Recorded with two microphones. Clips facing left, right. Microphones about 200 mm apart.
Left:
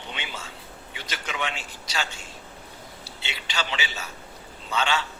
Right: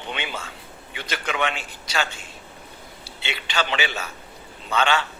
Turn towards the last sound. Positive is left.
turn(degrees=-55)  # may be behind; listen again after turning